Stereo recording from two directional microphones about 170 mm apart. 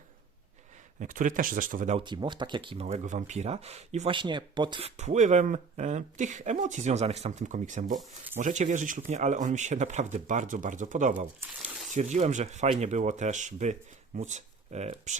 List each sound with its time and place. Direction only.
0.9 s speech: 50° right (ahead or behind)
2.0 s speech: 25° right (ahead or behind)
4.9 s speech: 45° right (ahead or behind)